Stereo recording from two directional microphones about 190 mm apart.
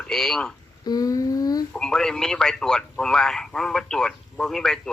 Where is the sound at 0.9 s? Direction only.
20° left (ahead or behind).